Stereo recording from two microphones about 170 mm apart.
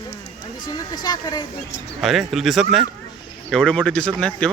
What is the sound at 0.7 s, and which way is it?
Speech, 25° left (ahead or behind).